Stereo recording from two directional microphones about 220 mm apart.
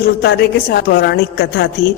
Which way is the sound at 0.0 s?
50° left (ahead or behind).